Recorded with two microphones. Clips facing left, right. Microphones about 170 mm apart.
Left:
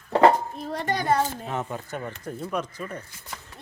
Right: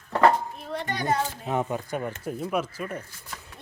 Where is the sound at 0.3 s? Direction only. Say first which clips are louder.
Left 1 dB; 40° left (ahead or behind).